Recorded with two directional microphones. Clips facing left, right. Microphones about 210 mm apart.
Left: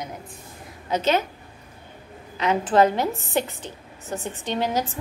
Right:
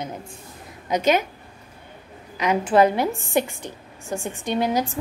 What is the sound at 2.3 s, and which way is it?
A woman's voice, 10° right (ahead or behind).